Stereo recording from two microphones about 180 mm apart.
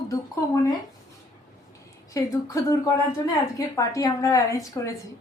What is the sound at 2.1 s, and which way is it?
A woman's voice, 20° left (ahead or behind).